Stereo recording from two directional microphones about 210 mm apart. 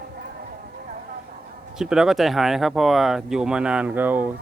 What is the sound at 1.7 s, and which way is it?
Speech, 5° right (ahead or behind).